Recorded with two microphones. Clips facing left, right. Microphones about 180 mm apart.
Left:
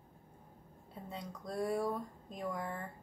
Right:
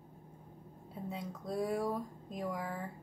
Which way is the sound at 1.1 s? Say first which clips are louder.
Right 2 dB; 5° right (ahead or behind).